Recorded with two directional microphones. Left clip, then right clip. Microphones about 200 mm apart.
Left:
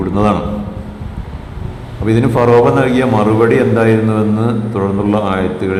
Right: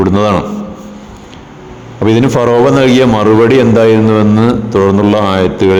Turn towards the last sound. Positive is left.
turn(degrees=-40)  # may be behind; listen again after turning